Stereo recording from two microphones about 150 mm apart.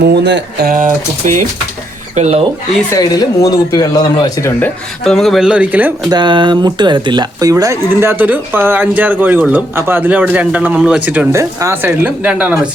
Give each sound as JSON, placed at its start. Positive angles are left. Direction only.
{"t": 0.6, "sound": "speech", "side_deg": -65}
{"t": 2.9, "sound": "speech", "side_deg": 25}
{"t": 4.6, "sound": "speech", "side_deg": 5}
{"t": 6.1, "sound": "speech", "side_deg": -30}